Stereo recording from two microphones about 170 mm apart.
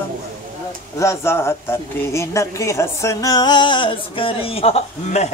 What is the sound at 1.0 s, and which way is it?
Speech, 15° left (ahead or behind).